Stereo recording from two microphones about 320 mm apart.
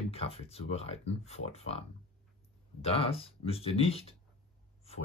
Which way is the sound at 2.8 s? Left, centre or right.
Centre.